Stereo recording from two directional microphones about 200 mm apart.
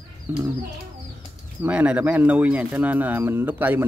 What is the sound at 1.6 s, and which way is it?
Speech, 5° right (ahead or behind).